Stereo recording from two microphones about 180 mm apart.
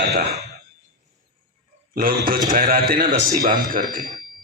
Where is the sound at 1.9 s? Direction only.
50° right (ahead or behind).